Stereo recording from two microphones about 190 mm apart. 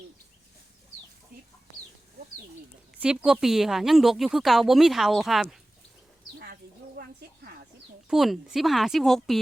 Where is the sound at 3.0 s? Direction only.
5° right (ahead or behind).